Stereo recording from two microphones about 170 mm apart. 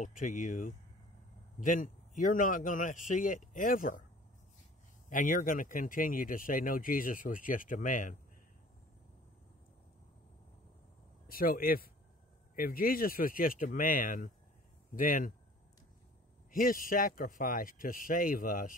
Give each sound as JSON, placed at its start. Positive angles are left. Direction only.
{"t": 0.0, "sound": "speech", "side_deg": 50}
{"t": 5.1, "sound": "speech", "side_deg": 50}
{"t": 11.2, "sound": "speech", "side_deg": 60}
{"t": 16.5, "sound": "speech", "side_deg": 55}